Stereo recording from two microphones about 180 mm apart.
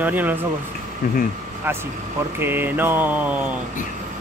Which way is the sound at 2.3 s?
10° right (ahead or behind).